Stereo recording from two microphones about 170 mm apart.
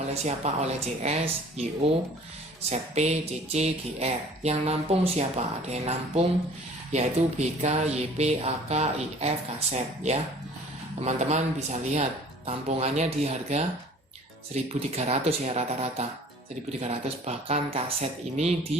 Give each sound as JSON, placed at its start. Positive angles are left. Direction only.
{"t": 0.1, "sound": "a man's voice", "side_deg": -40}